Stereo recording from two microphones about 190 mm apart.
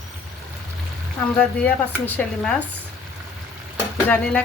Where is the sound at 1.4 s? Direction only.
10° left (ahead or behind).